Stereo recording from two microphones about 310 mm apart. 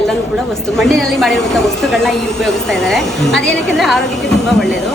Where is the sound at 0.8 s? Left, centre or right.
Centre.